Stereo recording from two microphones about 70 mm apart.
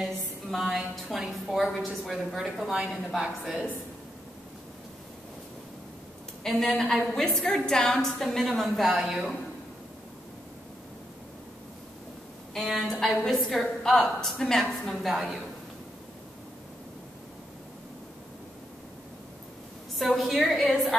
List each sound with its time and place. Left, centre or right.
0.0 s a woman's voice: centre
6.4 s a woman's voice: centre
12.5 s a woman's voice: centre
20.0 s a woman's voice: centre